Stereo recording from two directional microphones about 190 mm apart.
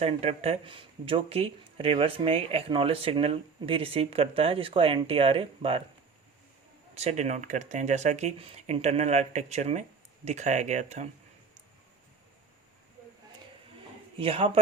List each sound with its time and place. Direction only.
0.0 s speech: 35° right (ahead or behind)
6.9 s speech: 35° right (ahead or behind)
14.2 s speech: 30° right (ahead or behind)